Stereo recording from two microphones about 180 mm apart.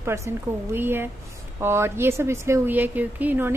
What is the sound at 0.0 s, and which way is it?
A woman's voice, 15° right (ahead or behind).